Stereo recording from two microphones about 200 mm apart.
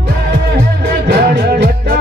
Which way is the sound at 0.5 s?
55° right (ahead or behind).